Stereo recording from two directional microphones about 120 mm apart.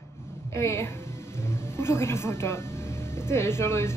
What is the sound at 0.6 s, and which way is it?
Speech, 25° left (ahead or behind).